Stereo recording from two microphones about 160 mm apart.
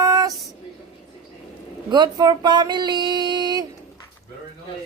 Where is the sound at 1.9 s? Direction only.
25° right (ahead or behind).